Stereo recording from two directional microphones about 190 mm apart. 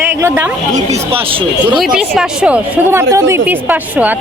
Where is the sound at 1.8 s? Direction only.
5° right (ahead or behind).